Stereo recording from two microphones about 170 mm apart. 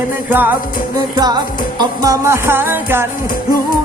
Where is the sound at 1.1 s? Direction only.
25° right (ahead or behind).